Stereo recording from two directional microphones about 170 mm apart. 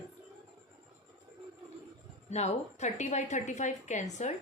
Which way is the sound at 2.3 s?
40° left (ahead or behind).